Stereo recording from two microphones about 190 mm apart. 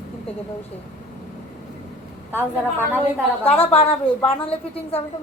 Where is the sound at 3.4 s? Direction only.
30° left (ahead or behind).